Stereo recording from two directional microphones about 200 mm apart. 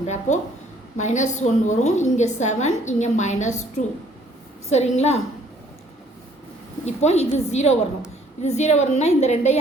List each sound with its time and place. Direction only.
0.0 s a sound: 35° left (ahead or behind)
0.9 s a woman's voice: 35° left (ahead or behind)
4.7 s a woman's voice: 35° left (ahead or behind)
6.8 s a woman's voice: 35° left (ahead or behind)